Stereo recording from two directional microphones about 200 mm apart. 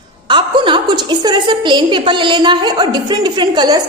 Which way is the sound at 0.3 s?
25° right (ahead or behind).